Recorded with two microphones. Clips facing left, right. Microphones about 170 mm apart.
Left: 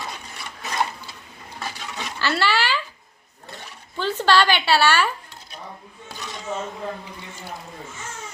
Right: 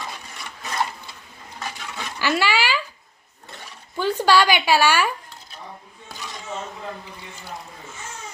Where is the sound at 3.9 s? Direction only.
10° right (ahead or behind).